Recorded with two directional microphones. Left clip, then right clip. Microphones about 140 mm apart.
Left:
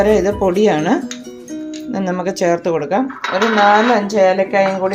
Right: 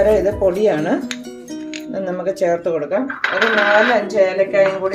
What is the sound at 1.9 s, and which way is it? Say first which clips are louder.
Speech: left 1 dB; 90° left.